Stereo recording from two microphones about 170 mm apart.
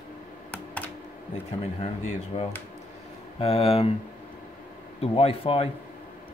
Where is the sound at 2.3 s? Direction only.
40° left (ahead or behind).